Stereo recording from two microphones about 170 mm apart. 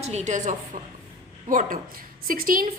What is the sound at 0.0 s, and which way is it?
A woman's voice, 40° right (ahead or behind).